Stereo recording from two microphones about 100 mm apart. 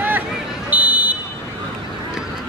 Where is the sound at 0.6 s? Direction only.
15° right (ahead or behind).